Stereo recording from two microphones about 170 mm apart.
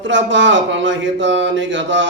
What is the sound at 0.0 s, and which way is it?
Mantra, 90° right.